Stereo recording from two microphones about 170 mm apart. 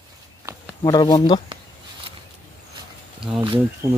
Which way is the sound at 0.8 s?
25° left (ahead or behind).